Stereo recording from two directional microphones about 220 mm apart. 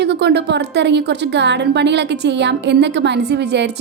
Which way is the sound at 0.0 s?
50° right (ahead or behind).